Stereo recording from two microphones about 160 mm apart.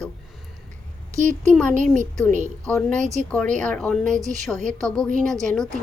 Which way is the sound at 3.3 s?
10° left (ahead or behind).